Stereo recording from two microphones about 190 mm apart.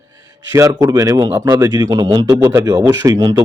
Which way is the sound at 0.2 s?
15° right (ahead or behind).